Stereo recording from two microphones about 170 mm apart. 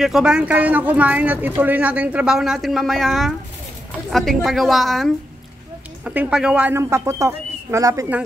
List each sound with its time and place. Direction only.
0.0 s a woman's voice: 5° right (ahead or behind)